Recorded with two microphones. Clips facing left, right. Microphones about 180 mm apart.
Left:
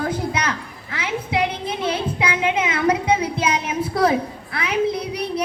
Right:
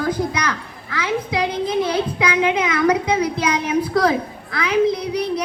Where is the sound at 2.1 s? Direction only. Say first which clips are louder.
Right 3 dB; 25° left (ahead or behind).